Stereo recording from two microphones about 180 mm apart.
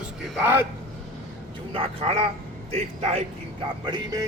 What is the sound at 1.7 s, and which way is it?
A man's voice, 30° right (ahead or behind).